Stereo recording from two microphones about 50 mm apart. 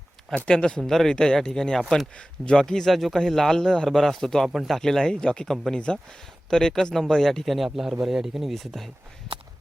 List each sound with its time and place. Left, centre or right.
0.4 s speech: centre
0.8 s speech: centre
2.9 s a man's voice: centre
4.4 s speech: centre
4.7 s a man's voice: centre